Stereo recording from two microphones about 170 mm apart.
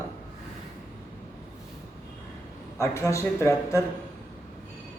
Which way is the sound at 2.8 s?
15° left (ahead or behind).